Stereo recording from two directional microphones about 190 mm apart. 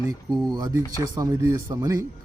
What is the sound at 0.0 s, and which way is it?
Speech, 20° right (ahead or behind).